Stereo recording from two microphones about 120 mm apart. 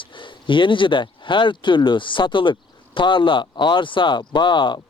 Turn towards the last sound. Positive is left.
turn(degrees=40)  # may be behind; listen again after turning